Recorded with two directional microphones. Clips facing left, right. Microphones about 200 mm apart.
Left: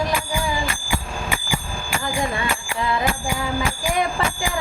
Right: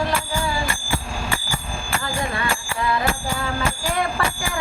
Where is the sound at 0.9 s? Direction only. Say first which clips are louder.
Even; 15° left (ahead or behind).